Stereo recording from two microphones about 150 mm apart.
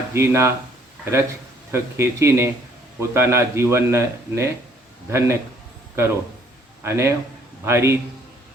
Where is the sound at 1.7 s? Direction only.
20° right (ahead or behind).